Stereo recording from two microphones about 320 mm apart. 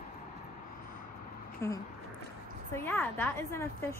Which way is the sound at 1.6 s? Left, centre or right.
Centre.